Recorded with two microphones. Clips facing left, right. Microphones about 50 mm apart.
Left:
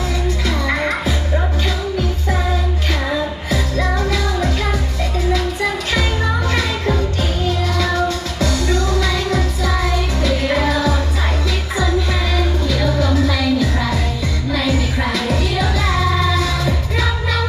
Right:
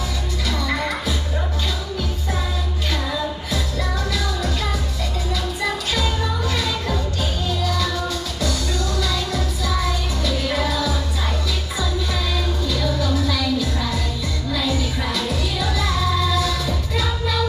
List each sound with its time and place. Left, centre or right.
0.5 s music: left
8.4 s music: left
13.0 s music: left